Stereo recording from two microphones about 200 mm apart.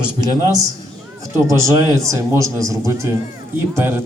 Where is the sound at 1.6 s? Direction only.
15° right (ahead or behind).